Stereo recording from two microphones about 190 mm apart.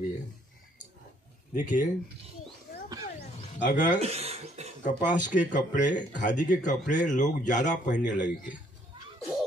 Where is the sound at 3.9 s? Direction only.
35° right (ahead or behind).